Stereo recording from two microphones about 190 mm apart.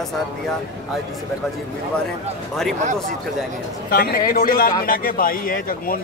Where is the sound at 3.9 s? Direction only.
50° left (ahead or behind).